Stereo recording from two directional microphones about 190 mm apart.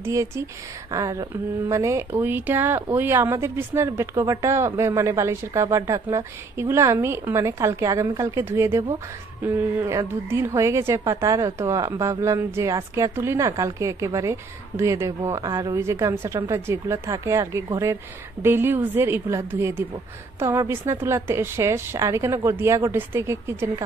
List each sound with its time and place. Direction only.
0.0 s speech: 15° right (ahead or behind)